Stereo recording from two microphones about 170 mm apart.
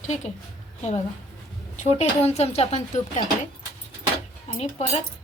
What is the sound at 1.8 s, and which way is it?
A woman's voice, 40° left (ahead or behind).